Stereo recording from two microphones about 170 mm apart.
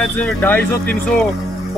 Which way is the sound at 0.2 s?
10° left (ahead or behind).